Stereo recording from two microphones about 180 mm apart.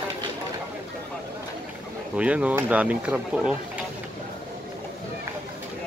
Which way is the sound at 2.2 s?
5° right (ahead or behind).